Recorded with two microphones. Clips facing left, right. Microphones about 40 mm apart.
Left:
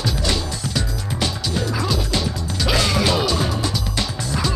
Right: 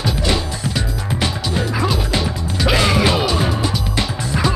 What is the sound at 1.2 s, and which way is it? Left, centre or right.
Music, centre.